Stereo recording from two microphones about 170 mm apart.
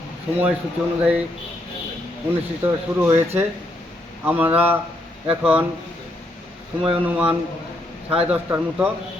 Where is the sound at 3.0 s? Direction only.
15° right (ahead or behind).